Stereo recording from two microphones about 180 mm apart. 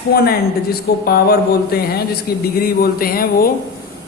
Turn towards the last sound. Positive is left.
turn(degrees=55)  # may be behind; listen again after turning